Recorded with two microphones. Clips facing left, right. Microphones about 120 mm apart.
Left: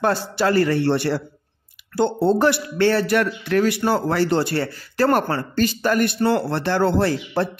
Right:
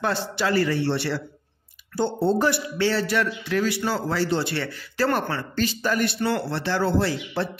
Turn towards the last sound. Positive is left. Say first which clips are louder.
# left 4 dB
turn(degrees=50)  # may be behind; listen again after turning